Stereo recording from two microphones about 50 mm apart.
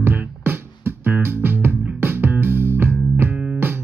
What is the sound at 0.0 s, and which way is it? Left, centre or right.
Music, right.